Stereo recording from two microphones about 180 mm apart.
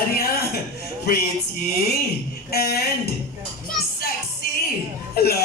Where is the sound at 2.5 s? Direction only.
60° left (ahead or behind).